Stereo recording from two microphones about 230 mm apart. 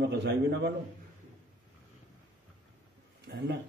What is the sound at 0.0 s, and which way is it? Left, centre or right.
Speech, right.